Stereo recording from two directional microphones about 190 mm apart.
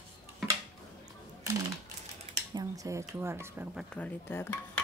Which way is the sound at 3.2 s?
15° right (ahead or behind).